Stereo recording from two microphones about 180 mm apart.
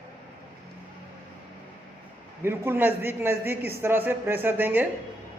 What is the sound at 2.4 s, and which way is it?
A man's voice, 15° right (ahead or behind).